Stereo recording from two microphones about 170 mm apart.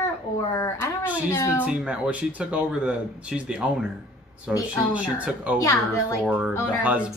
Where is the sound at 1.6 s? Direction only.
10° right (ahead or behind).